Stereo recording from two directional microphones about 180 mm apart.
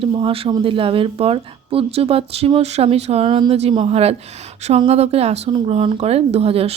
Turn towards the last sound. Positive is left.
turn(degrees=-35)  # may be behind; listen again after turning